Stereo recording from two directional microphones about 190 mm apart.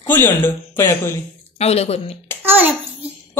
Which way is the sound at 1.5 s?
35° left (ahead or behind).